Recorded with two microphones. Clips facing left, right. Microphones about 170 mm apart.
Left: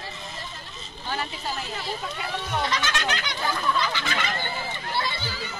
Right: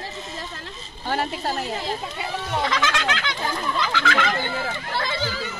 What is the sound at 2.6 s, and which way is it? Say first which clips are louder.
Speech: right 5 dB; 90° right.